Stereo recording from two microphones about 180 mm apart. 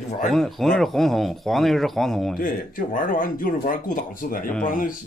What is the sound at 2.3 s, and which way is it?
Speech, 50° left (ahead or behind).